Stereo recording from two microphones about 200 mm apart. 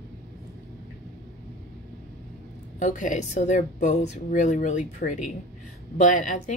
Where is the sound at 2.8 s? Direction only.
40° left (ahead or behind).